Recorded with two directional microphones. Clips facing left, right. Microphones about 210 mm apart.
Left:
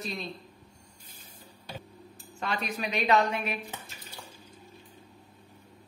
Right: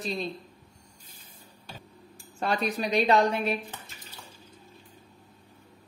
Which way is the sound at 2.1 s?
35° right (ahead or behind).